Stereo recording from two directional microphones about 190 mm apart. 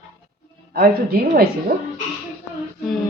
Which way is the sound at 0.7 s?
50° right (ahead or behind).